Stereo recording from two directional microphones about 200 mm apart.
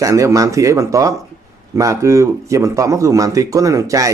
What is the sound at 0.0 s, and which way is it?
A man's voice, 15° right (ahead or behind).